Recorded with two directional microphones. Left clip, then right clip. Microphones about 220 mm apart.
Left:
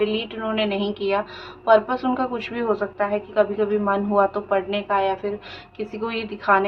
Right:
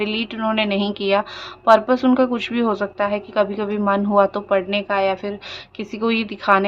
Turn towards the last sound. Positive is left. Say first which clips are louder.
# right 2 dB
turn(degrees=-45)  # may be behind; listen again after turning